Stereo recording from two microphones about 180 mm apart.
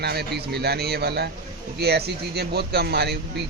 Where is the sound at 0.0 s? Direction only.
60° right (ahead or behind).